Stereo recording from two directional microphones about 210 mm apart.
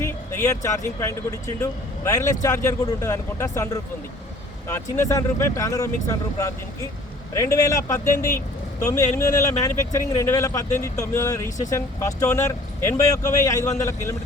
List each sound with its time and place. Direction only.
0.0 s speech: 15° left (ahead or behind)